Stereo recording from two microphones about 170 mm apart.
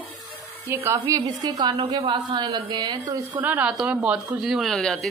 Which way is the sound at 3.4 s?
10° right (ahead or behind).